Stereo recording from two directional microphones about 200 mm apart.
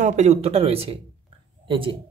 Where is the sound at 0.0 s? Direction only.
35° right (ahead or behind).